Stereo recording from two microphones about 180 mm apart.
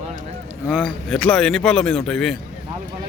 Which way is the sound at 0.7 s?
Centre (ahead or behind).